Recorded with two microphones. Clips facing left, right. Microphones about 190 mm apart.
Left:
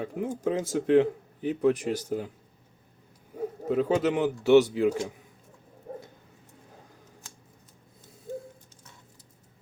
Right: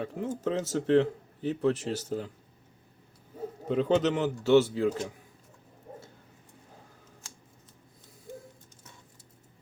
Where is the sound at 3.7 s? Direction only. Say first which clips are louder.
Even; 5° left (ahead or behind).